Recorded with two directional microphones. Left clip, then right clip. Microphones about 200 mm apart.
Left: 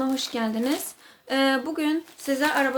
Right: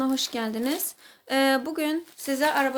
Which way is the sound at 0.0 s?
40° right (ahead or behind).